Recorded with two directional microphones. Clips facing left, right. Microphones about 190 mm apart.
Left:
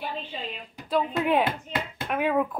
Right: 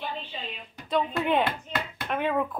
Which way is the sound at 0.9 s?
5° left (ahead or behind).